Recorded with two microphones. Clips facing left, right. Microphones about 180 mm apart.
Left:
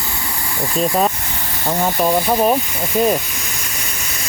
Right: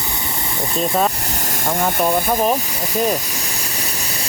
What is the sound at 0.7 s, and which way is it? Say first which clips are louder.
Speech: left 2 dB; centre (ahead or behind).